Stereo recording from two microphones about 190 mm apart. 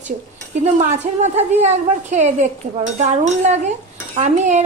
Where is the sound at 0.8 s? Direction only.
40° right (ahead or behind).